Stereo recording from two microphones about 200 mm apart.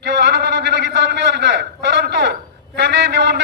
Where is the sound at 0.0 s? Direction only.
55° right (ahead or behind).